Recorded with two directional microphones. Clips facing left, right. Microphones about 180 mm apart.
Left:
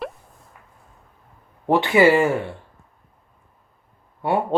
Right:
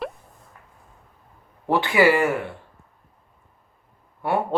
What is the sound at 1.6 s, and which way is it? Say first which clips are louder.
Speech: left 3 dB; 20° left (ahead or behind).